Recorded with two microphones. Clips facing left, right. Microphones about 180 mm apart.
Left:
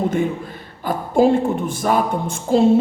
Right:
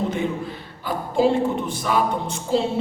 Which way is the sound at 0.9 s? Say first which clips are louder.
Left 4 dB; 50° left (ahead or behind).